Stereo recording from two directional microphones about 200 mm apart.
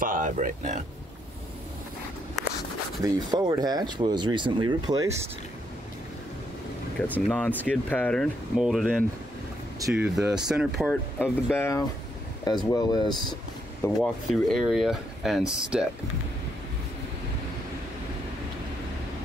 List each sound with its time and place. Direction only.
0.0 s speech: 40° right (ahead or behind)
3.0 s speech: 20° right (ahead or behind)
7.1 s speech: 10° left (ahead or behind)
11.1 s speech: 10° left (ahead or behind)
14.0 s speech: centre (ahead or behind)